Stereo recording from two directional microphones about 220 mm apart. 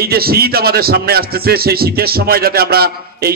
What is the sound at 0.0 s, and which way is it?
A man's voice, 45° right (ahead or behind).